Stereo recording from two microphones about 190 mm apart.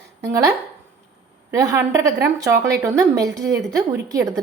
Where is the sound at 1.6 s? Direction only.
15° right (ahead or behind).